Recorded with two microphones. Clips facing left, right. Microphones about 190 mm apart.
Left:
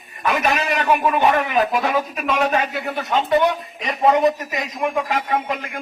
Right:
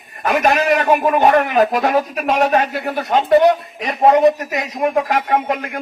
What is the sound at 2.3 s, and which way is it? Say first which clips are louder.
Speech: right 4 dB; 40° right (ahead or behind).